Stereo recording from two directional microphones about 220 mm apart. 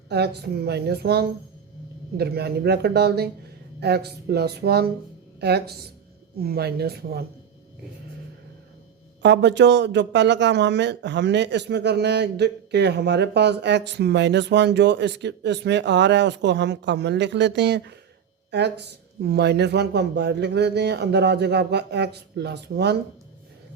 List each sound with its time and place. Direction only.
0.1 s speech: 50° right (ahead or behind)
9.2 s speech: 55° right (ahead or behind)